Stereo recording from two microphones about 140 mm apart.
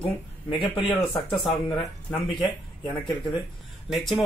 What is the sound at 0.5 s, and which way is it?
Speech, 40° left (ahead or behind).